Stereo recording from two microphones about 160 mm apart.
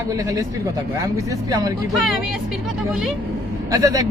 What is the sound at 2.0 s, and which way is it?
Speech, centre (ahead or behind).